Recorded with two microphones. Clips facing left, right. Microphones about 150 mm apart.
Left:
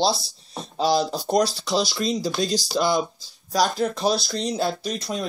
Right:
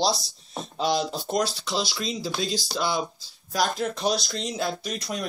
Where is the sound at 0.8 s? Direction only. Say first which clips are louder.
Left 4 dB; 35° left (ahead or behind).